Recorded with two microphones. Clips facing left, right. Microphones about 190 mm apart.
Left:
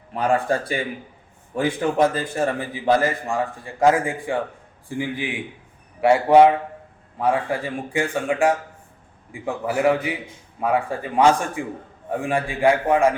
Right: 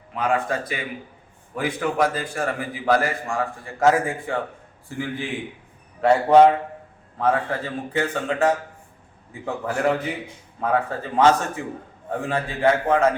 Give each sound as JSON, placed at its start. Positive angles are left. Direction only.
{"t": 0.1, "sound": "a man's voice", "side_deg": 35}